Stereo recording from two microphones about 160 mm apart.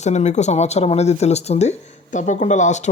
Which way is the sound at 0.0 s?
45° left (ahead or behind).